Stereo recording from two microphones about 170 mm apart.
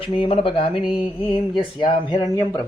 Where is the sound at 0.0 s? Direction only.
30° left (ahead or behind).